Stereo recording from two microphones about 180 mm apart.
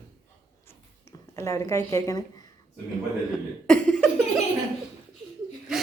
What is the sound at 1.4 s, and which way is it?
Speech, 15° left (ahead or behind).